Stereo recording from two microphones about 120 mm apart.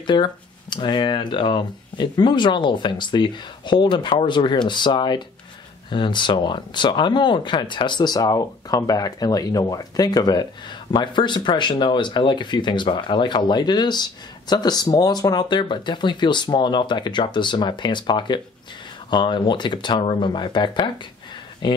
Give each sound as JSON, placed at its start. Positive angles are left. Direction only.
{"t": 0.0, "sound": "speech", "side_deg": 40}